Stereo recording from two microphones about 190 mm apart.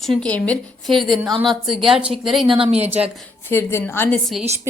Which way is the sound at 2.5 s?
30° right (ahead or behind).